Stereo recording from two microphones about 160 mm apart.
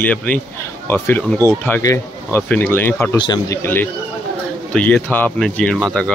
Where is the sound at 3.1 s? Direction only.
25° left (ahead or behind); by 6.1 s 5° left (ahead or behind).